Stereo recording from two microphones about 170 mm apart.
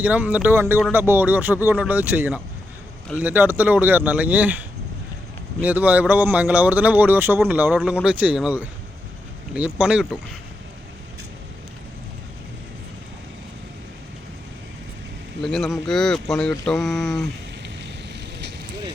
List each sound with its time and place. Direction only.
0.0 s speech: 10° right (ahead or behind)
5.6 s speech: 10° right (ahead or behind)
15.4 s speech: centre (ahead or behind)
17.8 s vehicle: 90° right